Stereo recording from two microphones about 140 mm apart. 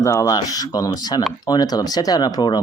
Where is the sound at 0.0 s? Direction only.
20° left (ahead or behind).